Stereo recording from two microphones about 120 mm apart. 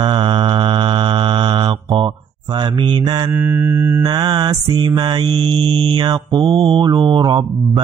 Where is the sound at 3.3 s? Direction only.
20° right (ahead or behind).